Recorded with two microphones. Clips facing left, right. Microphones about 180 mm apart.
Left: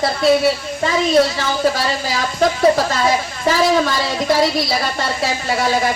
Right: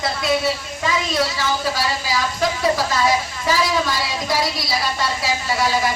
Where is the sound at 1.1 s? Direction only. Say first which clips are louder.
Left 6 dB; 55° left (ahead or behind).